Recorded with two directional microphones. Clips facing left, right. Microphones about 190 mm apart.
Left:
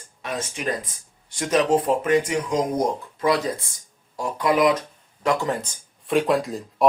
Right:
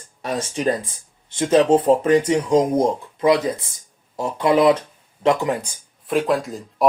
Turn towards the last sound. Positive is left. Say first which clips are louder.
# right 1 dB
turn(degrees=0)  # may be behind; listen again after turning